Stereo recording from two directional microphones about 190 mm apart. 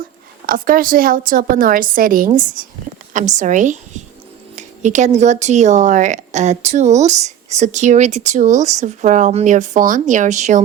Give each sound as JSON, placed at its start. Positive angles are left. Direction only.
{"t": 0.4, "sound": "a woman's voice", "side_deg": -45}